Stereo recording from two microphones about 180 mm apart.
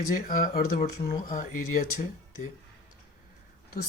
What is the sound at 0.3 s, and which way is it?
Speech, 50° left (ahead or behind).